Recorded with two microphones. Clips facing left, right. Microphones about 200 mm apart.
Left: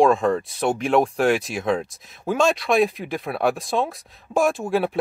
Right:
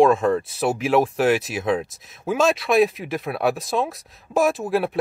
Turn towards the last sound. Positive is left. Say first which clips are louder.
# even
turn(degrees=0)  # may be behind; listen again after turning